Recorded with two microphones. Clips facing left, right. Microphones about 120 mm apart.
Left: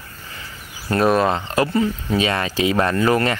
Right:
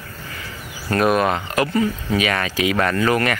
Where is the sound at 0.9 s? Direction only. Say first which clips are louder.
Left 1 dB; 25° left (ahead or behind).